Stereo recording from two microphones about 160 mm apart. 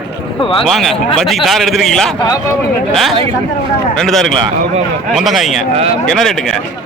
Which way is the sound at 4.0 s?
Centre (ahead or behind).